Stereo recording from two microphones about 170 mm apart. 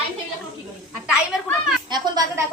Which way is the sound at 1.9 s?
25° right (ahead or behind).